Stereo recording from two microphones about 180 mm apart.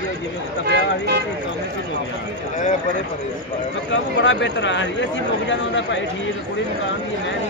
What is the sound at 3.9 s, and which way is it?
Speech, 90° left.